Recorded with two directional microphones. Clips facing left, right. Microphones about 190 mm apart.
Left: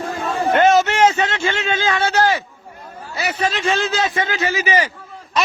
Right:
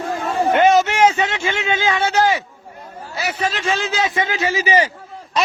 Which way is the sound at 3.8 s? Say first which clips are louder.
Even; 10° right (ahead or behind).